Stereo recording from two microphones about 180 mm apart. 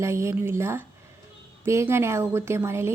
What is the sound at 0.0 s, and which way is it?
A woman's voice, 15° right (ahead or behind).